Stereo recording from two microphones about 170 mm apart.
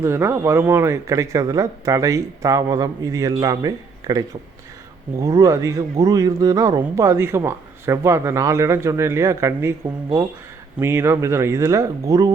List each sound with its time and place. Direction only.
0.0 s a man's voice: 15° right (ahead or behind)